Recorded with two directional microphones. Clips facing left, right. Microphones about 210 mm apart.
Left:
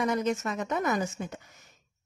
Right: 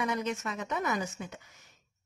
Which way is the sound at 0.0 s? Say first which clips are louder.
Left 5 dB; 40° left (ahead or behind).